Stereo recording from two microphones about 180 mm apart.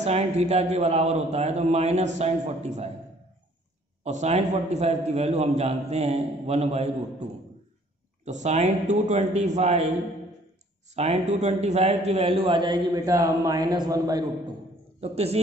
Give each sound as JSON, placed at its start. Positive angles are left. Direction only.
{"t": 0.0, "sound": "a man's voice", "side_deg": -35}
{"t": 4.0, "sound": "a man's voice", "side_deg": -40}
{"t": 8.3, "sound": "a man's voice", "side_deg": -40}
{"t": 11.0, "sound": "a man's voice", "side_deg": -40}
{"t": 15.0, "sound": "a man's voice", "side_deg": -35}